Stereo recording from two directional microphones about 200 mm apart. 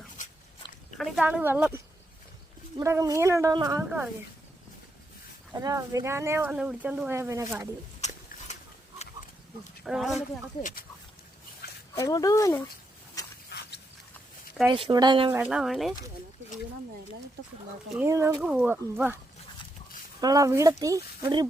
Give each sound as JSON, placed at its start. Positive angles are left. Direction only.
{"t": 0.2, "sound": "dog", "side_deg": 40}
{"t": 0.9, "sound": "speech", "side_deg": 0}
{"t": 5.5, "sound": "speech", "side_deg": -15}
{"t": 8.0, "sound": "biting", "side_deg": 35}
{"t": 9.8, "sound": "speech", "side_deg": 0}
{"t": 10.2, "sound": "speech", "side_deg": 40}
{"t": 11.6, "sound": "a sound", "side_deg": 50}
{"t": 11.9, "sound": "speech", "side_deg": 15}
{"t": 13.2, "sound": "a sound", "side_deg": 15}
{"t": 13.5, "sound": "a sound", "side_deg": 55}
{"t": 14.7, "sound": "speech", "side_deg": -20}
{"t": 15.3, "sound": "speech", "side_deg": -5}
{"t": 17.9, "sound": "speech", "side_deg": -10}
{"t": 20.2, "sound": "speech", "side_deg": -15}